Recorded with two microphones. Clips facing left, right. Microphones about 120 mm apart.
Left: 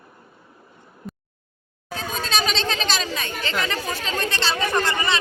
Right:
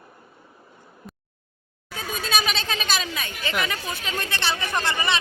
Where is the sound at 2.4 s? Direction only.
10° right (ahead or behind).